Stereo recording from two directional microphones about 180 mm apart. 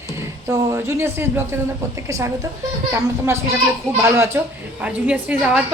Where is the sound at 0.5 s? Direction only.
15° right (ahead or behind).